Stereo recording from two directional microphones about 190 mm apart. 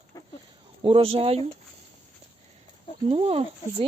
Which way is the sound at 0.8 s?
30° right (ahead or behind).